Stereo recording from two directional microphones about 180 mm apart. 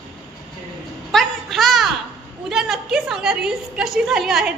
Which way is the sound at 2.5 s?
Centre (ahead or behind).